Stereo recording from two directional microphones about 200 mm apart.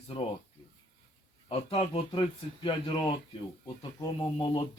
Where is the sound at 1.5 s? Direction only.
30° left (ahead or behind).